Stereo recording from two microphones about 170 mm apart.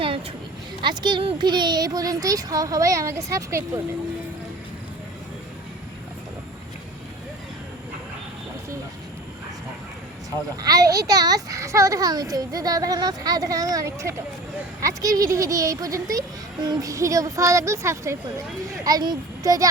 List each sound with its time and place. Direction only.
0.8 s a child's voice: 25° right (ahead or behind)
10.6 s a child's voice: 20° right (ahead or behind)